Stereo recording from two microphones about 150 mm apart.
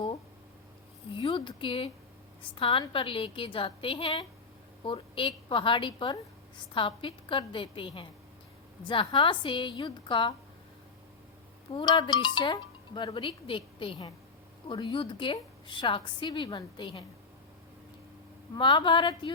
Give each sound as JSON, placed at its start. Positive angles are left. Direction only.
{"t": 1.2, "sound": "speech", "side_deg": 35}
{"t": 11.7, "sound": "speech", "side_deg": 35}
{"t": 18.5, "sound": "speech", "side_deg": 35}